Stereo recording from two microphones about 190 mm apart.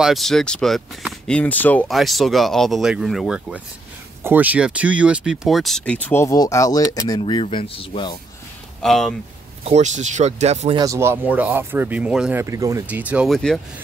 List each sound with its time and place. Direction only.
0.0 s speech: centre (ahead or behind); by 8.2 s 25° left (ahead or behind)
8.8 s speech: centre (ahead or behind)
9.7 s speech: 40° right (ahead or behind)
10.8 s speech: 15° right (ahead or behind); by 13.6 s centre (ahead or behind)